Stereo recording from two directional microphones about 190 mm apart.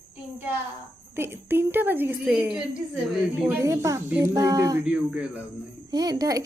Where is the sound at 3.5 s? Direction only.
15° right (ahead or behind).